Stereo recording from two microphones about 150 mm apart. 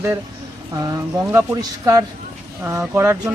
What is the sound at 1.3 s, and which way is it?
Speech, 20° right (ahead or behind).